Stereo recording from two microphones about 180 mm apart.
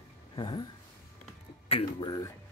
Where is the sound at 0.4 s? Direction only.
25° left (ahead or behind).